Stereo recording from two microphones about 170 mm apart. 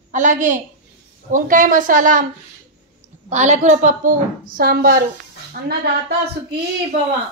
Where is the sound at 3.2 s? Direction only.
40° right (ahead or behind); by 5.7 s 65° right (ahead or behind).